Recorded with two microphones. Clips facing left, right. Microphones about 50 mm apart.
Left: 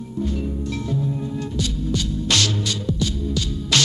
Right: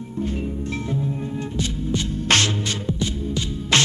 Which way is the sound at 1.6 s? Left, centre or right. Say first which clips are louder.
Even; right.